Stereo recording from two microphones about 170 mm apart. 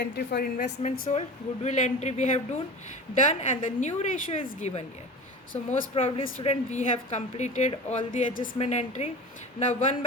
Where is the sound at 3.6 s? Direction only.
45° left (ahead or behind).